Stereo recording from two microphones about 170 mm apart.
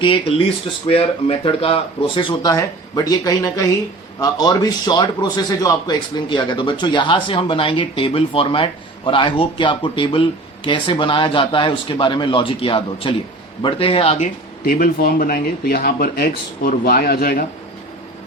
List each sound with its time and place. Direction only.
0.0 s a man's voice: 30° left (ahead or behind)
14.6 s speech: 60° left (ahead or behind)